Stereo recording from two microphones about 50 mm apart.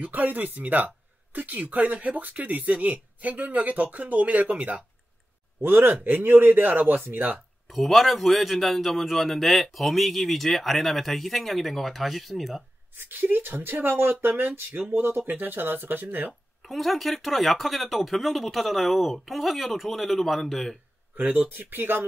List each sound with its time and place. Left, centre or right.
0.0 s speech: right
5.6 s speech: right
7.6 s a man's voice: centre
12.9 s speech: right
16.6 s a man's voice: centre
21.5 s speech: right